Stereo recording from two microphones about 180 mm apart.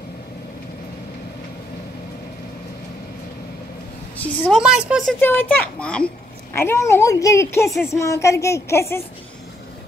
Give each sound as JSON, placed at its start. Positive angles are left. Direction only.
{"t": 4.2, "sound": "a woman's voice", "side_deg": 10}
{"t": 4.6, "sound": "speech", "side_deg": -5}
{"t": 5.2, "sound": "a woman's voice", "side_deg": 10}